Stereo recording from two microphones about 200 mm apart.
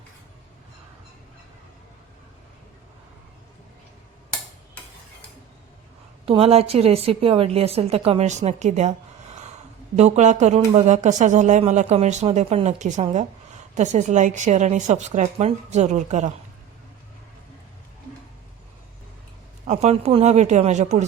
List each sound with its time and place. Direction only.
6.2 s a woman's voice: 30° right (ahead or behind)
9.9 s a woman's voice: 35° right (ahead or behind)
19.6 s a woman's voice: 35° right (ahead or behind)